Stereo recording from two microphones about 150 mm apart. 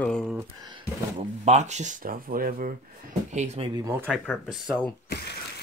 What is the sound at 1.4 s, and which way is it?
Speech, 50° right (ahead or behind).